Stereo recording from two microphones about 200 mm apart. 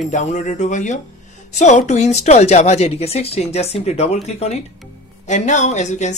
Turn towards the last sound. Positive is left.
turn(degrees=35)  # may be behind; listen again after turning